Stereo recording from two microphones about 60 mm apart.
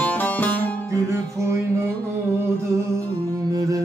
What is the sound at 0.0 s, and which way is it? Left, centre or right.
Music, left.